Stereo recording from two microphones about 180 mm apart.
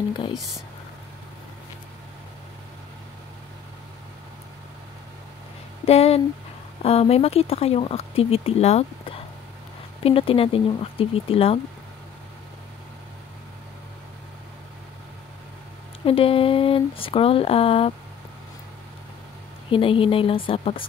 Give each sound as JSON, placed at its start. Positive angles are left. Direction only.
{"t": 0.3, "sound": "speech", "side_deg": 0}
{"t": 5.9, "sound": "speech", "side_deg": 35}
{"t": 16.1, "sound": "speech", "side_deg": 30}
{"t": 19.7, "sound": "speech", "side_deg": 30}